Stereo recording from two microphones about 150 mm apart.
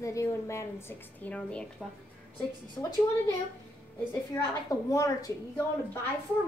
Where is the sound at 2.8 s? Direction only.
20° left (ahead or behind).